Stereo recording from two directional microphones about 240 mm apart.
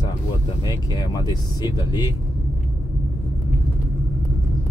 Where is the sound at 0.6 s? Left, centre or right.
Centre.